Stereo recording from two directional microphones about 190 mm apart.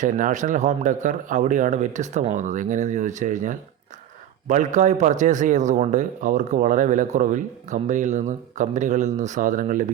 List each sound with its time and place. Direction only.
0.0 s a man's voice: 40° right (ahead or behind)